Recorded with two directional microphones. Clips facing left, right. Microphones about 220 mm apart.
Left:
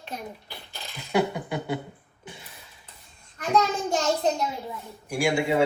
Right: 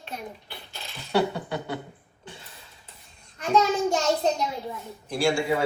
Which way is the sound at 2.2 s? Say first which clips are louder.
Even; 15° left (ahead or behind).